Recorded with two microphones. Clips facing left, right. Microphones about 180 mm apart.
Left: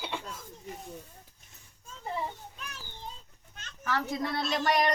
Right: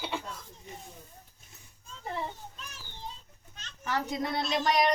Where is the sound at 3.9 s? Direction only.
20° right (ahead or behind).